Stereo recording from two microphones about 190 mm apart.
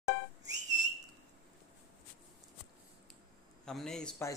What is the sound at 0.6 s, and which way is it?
Whistling, 40° right (ahead or behind).